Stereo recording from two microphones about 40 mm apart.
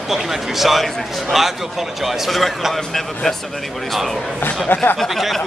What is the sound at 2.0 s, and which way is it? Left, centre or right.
Speech, centre.